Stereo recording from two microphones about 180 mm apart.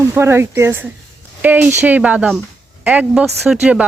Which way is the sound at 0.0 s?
15° right (ahead or behind).